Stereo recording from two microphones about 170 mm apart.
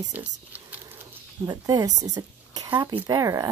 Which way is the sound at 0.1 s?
10° right (ahead or behind).